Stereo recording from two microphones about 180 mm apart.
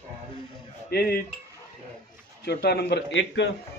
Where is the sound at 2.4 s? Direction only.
65° left (ahead or behind).